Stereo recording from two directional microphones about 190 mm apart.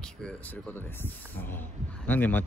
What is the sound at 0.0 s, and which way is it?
Speech, 5° left (ahead or behind).